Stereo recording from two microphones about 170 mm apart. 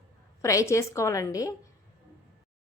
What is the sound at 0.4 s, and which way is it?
A woman's voice, 15° left (ahead or behind).